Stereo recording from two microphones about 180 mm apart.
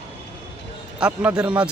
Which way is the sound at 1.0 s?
5° right (ahead or behind).